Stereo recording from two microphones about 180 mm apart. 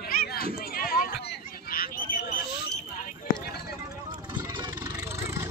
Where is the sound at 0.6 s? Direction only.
55° left (ahead or behind).